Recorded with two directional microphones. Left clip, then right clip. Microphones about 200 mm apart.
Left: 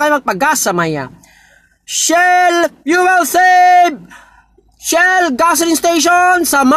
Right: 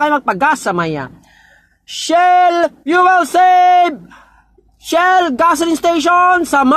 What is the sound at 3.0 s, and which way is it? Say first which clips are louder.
Speech: right 1 dB; 45° left (ahead or behind).